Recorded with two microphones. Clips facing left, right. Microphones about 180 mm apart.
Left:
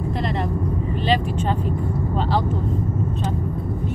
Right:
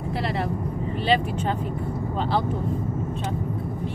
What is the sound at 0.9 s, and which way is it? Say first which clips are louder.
Speech: even; 5° right (ahead or behind).